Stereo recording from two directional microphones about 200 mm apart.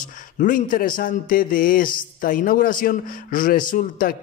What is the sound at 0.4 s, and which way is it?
A man's voice, 45° left (ahead or behind).